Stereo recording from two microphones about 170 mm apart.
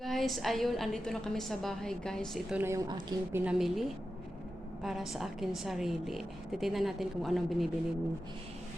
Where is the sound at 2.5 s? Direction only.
15° right (ahead or behind).